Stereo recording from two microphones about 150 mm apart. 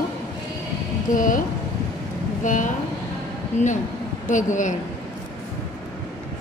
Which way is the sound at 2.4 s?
55° left (ahead or behind).